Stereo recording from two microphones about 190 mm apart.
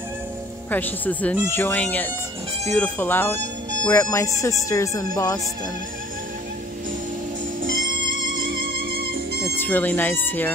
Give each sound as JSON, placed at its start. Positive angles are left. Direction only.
{"t": 0.7, "sound": "speech", "side_deg": 10}
{"t": 8.4, "sound": "music", "side_deg": -50}
{"t": 9.6, "sound": "speech", "side_deg": 10}